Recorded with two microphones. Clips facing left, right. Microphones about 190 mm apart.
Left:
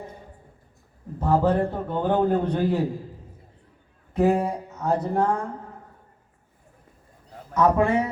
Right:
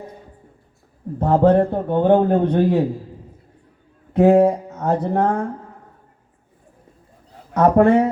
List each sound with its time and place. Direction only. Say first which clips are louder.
1.2 s a man's voice: right 6 dB; 60° right (ahead or behind)
4.1 s a man's voice: right 8 dB; 65° right (ahead or behind)
7.5 s a man's voice: right 7 dB; 60° right (ahead or behind)